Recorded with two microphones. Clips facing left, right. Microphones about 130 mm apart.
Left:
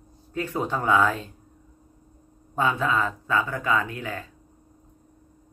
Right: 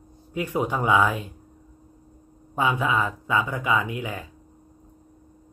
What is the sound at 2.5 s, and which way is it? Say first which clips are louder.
Speech: even; 15° right (ahead or behind).